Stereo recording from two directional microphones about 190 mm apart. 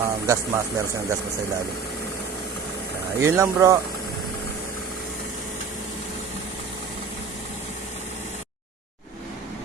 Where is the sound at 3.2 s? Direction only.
15° right (ahead or behind).